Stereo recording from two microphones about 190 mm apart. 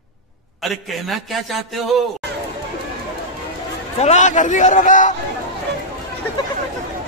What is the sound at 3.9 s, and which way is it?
A man's voice, 35° left (ahead or behind).